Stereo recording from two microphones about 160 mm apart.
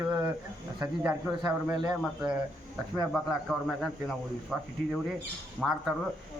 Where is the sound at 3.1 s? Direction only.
Centre (ahead or behind).